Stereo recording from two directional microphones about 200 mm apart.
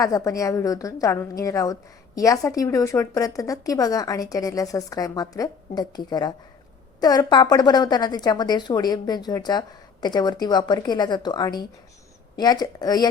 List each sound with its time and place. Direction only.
0.0 s a woman's voice: 15° left (ahead or behind)